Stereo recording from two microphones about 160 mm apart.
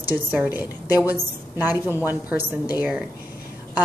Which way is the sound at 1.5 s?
10° right (ahead or behind).